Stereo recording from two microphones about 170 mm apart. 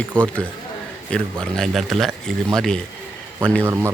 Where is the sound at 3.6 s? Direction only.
15° right (ahead or behind).